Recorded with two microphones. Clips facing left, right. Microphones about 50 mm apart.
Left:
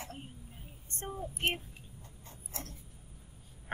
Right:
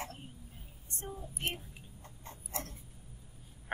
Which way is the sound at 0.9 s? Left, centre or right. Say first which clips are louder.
Left 4 dB; left.